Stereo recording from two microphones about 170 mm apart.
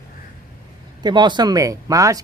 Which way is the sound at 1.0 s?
25° right (ahead or behind).